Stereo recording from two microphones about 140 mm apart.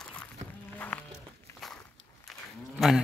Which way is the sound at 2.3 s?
Centre (ahead or behind).